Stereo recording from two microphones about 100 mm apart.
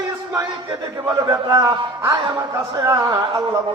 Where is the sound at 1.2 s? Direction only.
40° right (ahead or behind).